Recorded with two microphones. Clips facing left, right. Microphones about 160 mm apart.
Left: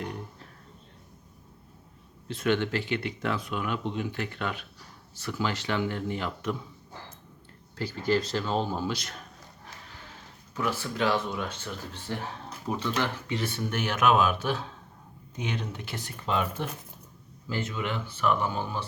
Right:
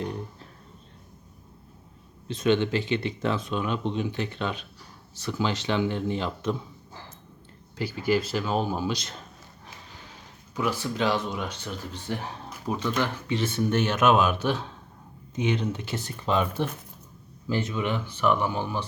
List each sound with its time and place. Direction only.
2.2 s speech: 20° right (ahead or behind)
7.8 s speech: 10° right (ahead or behind)
10.5 s speech: 15° right (ahead or behind)